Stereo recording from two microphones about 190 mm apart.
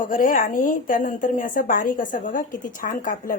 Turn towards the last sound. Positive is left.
turn(degrees=45)  # may be behind; listen again after turning